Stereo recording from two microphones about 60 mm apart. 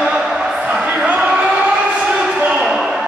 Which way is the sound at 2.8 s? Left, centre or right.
Centre.